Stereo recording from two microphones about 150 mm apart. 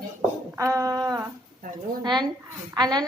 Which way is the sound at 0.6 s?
20° right (ahead or behind).